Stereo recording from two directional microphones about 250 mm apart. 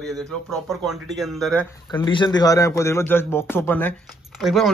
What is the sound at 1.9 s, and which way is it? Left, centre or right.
A man's voice, centre.